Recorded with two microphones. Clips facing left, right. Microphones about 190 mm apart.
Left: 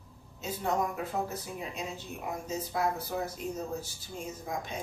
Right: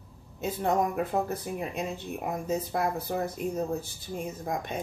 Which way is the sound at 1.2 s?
55° right (ahead or behind).